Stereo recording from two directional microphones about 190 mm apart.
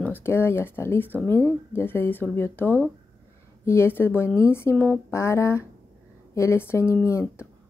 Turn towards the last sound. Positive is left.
turn(degrees=15)  # may be behind; listen again after turning